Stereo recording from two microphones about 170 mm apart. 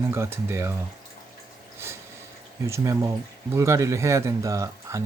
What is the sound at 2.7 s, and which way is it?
Speech, 20° right (ahead or behind).